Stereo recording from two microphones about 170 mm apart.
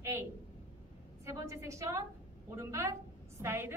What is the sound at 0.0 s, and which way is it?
A woman's voice, 15° right (ahead or behind).